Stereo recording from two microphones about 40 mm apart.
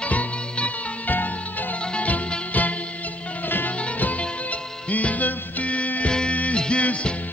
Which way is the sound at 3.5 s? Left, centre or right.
Left.